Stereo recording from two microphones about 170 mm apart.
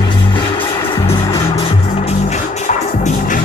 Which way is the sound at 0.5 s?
30° left (ahead or behind).